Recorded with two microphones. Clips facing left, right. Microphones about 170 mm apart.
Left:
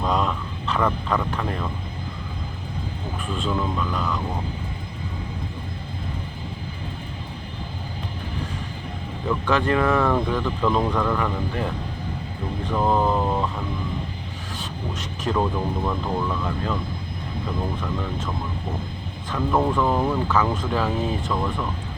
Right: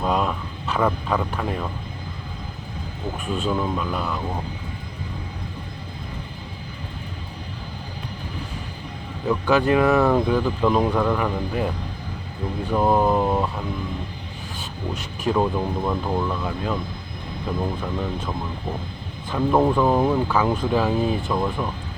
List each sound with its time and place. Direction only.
0.0 s a sound: 5° right (ahead or behind)
3.3 s speech: 10° right (ahead or behind)
9.3 s speech: 15° right (ahead or behind)
12.7 s speech: 10° right (ahead or behind)
15.2 s speech: 10° right (ahead or behind)
19.3 s speech: 15° right (ahead or behind)